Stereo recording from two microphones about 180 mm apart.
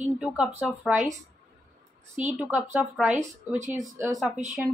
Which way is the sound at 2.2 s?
10° right (ahead or behind).